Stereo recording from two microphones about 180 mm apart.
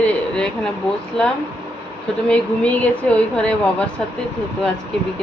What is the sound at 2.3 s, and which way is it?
A woman's voice, 5° left (ahead or behind).